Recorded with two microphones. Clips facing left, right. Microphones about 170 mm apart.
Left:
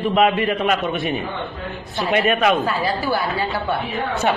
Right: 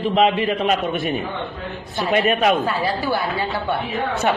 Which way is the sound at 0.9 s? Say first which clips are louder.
Even; centre (ahead or behind).